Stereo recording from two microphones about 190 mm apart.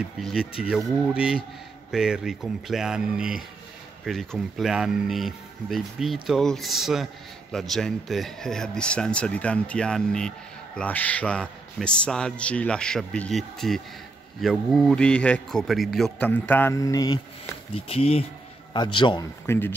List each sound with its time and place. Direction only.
0.0 s a man's voice: centre (ahead or behind); by 17.2 s 20° left (ahead or behind)
17.7 s a man's voice: 30° left (ahead or behind)
19.4 s speech: 15° left (ahead or behind)